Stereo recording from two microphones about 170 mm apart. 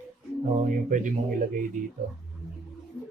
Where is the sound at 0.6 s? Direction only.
50° right (ahead or behind).